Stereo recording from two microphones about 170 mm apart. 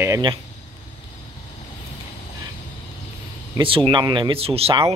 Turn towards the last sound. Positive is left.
turn(degrees=-35)  # may be behind; listen again after turning